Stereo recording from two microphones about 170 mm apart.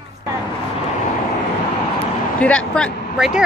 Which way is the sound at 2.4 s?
5° left (ahead or behind).